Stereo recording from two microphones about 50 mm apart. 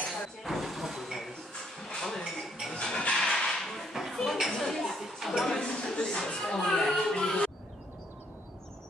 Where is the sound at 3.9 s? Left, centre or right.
Centre.